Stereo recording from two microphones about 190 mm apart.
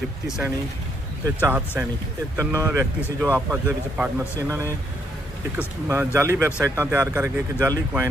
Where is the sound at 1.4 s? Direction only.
10° right (ahead or behind).